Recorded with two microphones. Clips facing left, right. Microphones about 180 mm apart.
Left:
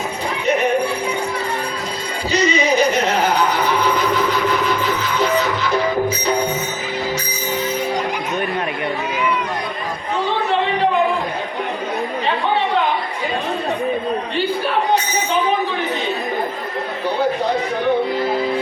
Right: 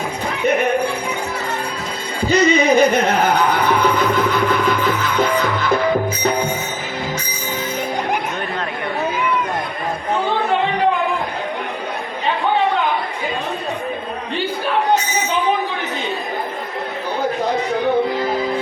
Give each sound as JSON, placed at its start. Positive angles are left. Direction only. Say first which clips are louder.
{"t": 2.2, "sound": "music", "louder": "right 4 dB", "side_deg": -55}